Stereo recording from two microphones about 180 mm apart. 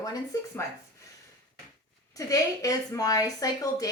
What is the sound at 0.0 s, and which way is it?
Speech, 20° left (ahead or behind).